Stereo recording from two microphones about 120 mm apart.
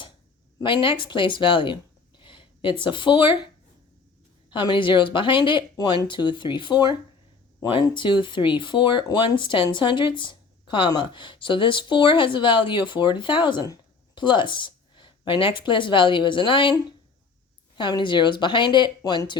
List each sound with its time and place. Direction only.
0.6 s a woman's voice: 40° left (ahead or behind)
17.7 s a woman's voice: 40° left (ahead or behind)